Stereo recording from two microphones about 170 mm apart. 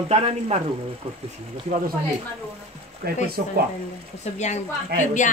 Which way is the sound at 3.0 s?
65° right (ahead or behind).